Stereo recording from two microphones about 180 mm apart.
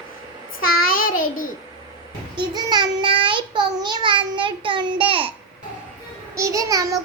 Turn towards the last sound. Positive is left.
turn(degrees=-20)  # may be behind; listen again after turning